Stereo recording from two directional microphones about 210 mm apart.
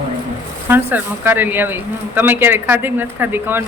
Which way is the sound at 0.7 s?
10° right (ahead or behind).